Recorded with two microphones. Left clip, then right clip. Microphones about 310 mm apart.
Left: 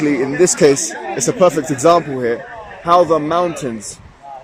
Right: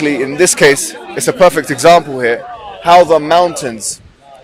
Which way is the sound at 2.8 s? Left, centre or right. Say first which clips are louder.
Right 5 dB; right.